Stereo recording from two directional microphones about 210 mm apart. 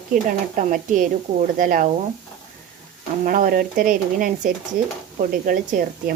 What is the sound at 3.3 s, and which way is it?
Speech, 40° right (ahead or behind).